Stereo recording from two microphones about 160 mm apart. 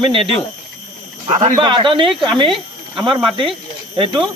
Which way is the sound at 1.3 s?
25° right (ahead or behind).